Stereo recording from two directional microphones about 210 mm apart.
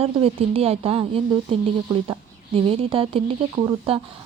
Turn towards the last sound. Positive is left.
turn(degrees=-25)  # may be behind; listen again after turning